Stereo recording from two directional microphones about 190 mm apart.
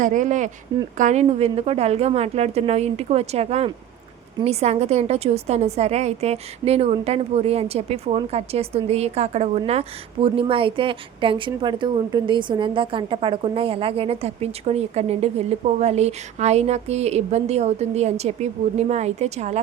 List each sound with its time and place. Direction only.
0.0 s a woman's voice: 40° right (ahead or behind)